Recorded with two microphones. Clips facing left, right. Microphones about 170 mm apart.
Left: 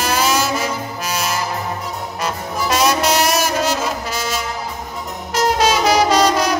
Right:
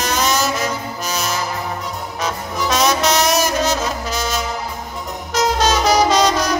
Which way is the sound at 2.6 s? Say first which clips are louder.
Even; 5° left (ahead or behind).